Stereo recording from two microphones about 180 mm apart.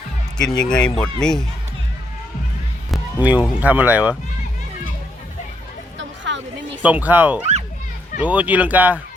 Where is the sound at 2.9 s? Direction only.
10° right (ahead or behind).